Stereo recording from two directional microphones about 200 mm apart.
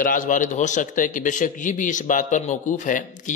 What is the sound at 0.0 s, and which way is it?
A man's voice, 40° left (ahead or behind).